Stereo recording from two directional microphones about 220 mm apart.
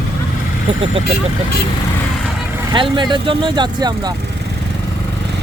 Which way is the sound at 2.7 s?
20° right (ahead or behind).